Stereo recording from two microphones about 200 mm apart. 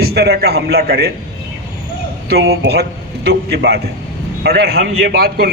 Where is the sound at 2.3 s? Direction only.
55° right (ahead or behind).